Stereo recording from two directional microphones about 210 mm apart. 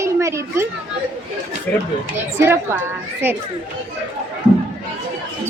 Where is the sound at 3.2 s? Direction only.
10° right (ahead or behind).